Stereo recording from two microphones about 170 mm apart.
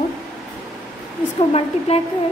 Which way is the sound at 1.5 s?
35° left (ahead or behind).